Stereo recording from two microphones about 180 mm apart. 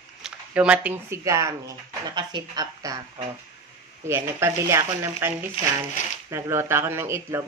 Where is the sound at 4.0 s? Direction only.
15° right (ahead or behind).